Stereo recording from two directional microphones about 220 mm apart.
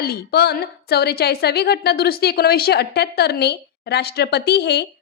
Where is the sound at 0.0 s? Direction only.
45° left (ahead or behind).